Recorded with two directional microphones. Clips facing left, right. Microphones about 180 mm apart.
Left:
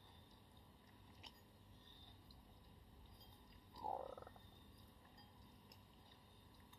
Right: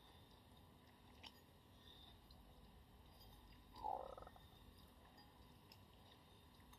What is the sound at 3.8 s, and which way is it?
Frog, centre (ahead or behind).